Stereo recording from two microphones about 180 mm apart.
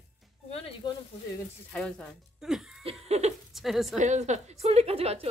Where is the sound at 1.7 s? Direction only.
5° left (ahead or behind).